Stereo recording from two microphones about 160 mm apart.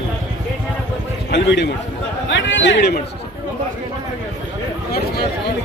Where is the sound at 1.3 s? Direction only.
90° left.